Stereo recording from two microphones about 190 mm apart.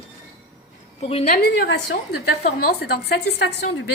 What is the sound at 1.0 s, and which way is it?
Speech, 30° left (ahead or behind).